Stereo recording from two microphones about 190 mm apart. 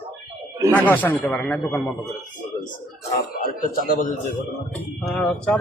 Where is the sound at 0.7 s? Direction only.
10° left (ahead or behind).